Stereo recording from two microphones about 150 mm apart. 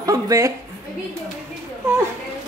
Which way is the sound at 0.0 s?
20° right (ahead or behind).